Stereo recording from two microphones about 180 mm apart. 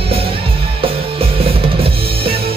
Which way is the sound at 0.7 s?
30° right (ahead or behind).